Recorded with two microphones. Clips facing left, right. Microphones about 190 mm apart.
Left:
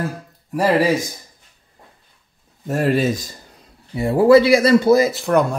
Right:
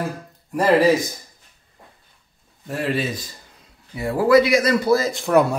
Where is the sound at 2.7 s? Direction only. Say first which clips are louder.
Left 6 dB; 45° left (ahead or behind).